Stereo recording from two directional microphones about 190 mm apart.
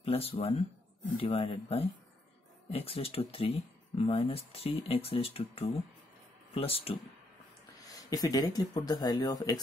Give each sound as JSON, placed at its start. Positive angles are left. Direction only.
{"t": 0.0, "sound": "speech", "side_deg": 30}
{"t": 7.8, "sound": "speech", "side_deg": 20}